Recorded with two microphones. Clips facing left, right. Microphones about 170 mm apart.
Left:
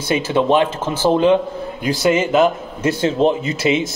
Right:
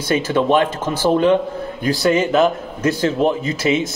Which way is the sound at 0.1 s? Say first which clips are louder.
Even; 20° left (ahead or behind).